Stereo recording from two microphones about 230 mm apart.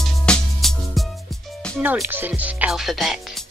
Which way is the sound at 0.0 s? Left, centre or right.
Centre.